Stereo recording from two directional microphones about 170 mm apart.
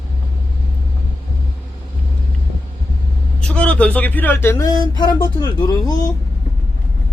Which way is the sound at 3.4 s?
5° left (ahead or behind).